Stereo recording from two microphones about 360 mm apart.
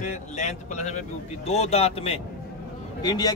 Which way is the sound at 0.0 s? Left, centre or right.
Centre.